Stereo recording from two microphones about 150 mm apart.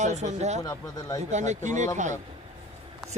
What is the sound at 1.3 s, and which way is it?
Speech, 50° right (ahead or behind).